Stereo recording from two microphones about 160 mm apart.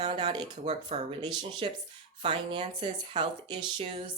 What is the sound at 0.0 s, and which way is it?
Speech, 30° right (ahead or behind).